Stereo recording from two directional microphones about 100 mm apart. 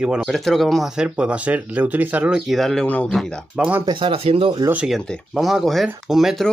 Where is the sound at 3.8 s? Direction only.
55° right (ahead or behind).